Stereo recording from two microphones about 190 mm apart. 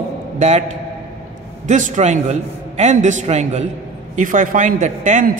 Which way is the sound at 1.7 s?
40° right (ahead or behind).